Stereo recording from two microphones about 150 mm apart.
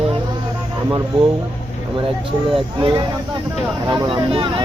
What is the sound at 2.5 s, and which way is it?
Speech, 35° right (ahead or behind).